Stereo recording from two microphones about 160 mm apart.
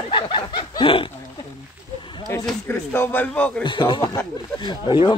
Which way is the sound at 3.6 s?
30° left (ahead or behind).